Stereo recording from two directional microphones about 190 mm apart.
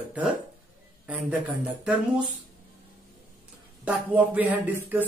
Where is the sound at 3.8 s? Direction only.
10° right (ahead or behind).